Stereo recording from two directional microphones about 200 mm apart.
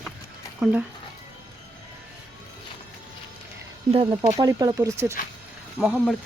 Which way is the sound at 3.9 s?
25° right (ahead or behind).